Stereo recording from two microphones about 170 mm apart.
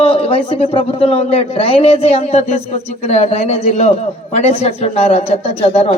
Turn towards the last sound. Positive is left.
turn(degrees=35)  # may be behind; listen again after turning